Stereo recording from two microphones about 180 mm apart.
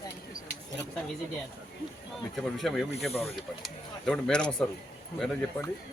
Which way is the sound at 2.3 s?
Centre (ahead or behind).